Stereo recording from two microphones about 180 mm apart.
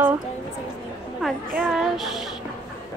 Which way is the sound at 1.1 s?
5° right (ahead or behind).